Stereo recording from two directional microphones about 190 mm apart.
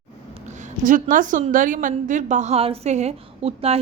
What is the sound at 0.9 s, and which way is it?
A woman's voice, 45° right (ahead or behind).